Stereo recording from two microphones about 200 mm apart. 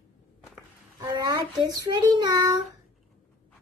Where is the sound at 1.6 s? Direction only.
20° right (ahead or behind).